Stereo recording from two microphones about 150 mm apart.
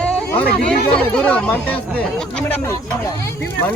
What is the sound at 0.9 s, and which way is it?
Speech, 10° left (ahead or behind).